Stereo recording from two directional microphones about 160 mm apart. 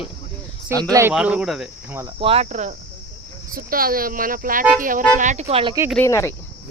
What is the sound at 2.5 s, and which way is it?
Speech, 50° right (ahead or behind).